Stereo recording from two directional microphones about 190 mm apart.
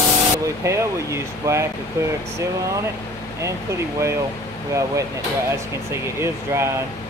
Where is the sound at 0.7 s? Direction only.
15° right (ahead or behind).